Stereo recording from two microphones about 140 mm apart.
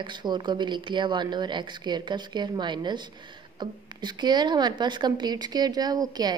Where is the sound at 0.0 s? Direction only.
35° right (ahead or behind).